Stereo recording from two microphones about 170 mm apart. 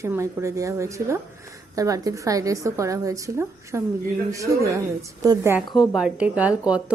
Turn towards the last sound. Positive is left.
turn(degrees=-5)  # may be behind; listen again after turning